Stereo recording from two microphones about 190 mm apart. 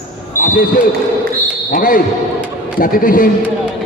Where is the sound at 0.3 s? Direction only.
45° left (ahead or behind).